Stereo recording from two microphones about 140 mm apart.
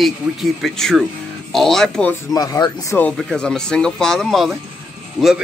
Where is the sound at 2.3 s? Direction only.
25° left (ahead or behind).